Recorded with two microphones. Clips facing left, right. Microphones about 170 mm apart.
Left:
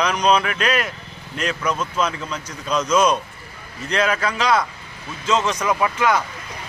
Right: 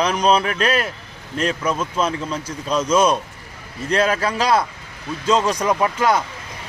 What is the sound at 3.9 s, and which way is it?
Speech, 30° right (ahead or behind).